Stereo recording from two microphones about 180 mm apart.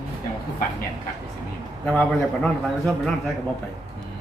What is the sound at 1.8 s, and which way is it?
A woman's voice, 5° left (ahead or behind).